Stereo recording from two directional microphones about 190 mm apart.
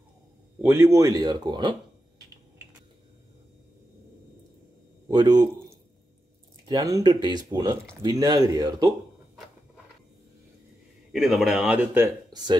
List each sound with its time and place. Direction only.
0.6 s speech: 10° right (ahead or behind)
5.0 s speech: 20° right (ahead or behind)
6.7 s speech: 20° right (ahead or behind)
11.1 s speech: centre (ahead or behind)